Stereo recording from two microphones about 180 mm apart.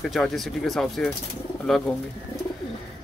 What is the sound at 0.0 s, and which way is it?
Speech, centre (ahead or behind).